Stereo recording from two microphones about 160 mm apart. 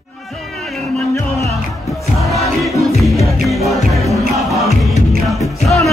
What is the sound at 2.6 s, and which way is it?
Music, centre (ahead or behind).